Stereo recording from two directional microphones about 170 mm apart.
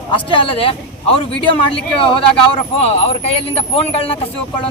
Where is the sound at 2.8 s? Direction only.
35° left (ahead or behind).